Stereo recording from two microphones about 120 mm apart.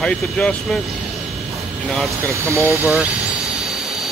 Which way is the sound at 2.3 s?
25° right (ahead or behind).